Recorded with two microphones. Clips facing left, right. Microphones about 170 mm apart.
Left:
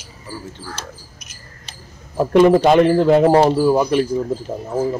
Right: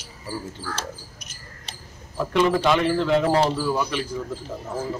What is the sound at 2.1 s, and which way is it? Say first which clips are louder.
Speech: left 9 dB; 50° left (ahead or behind).